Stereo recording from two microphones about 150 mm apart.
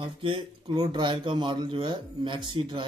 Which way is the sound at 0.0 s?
35° right (ahead or behind).